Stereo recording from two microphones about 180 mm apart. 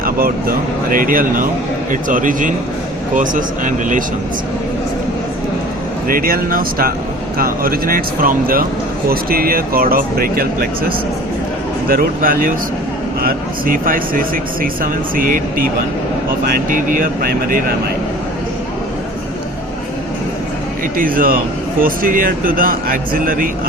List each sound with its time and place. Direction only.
0.0 s speech: 55° right (ahead or behind)
6.1 s speech: 50° right (ahead or behind)
20.9 s speech: 50° right (ahead or behind)